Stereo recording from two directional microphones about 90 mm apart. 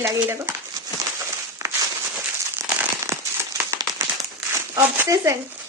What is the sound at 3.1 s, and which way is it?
Crumpling, 30° right (ahead or behind).